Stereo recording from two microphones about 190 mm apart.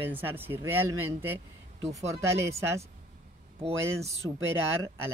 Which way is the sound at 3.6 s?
30° right (ahead or behind).